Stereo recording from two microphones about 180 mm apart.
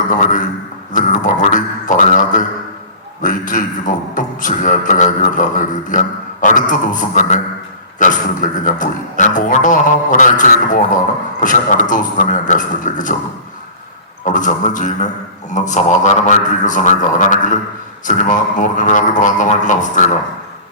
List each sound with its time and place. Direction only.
0.1 s a man's voice: 45° left (ahead or behind)
0.9 s a sound: 45° left (ahead or behind)
3.2 s a man's voice: 45° left (ahead or behind)
14.3 s a man's voice: 45° left (ahead or behind)